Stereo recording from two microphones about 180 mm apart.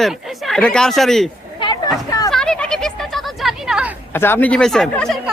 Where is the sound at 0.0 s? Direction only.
Centre (ahead or behind).